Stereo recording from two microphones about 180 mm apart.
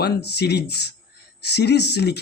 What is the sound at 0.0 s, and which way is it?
Speech, 65° left (ahead or behind).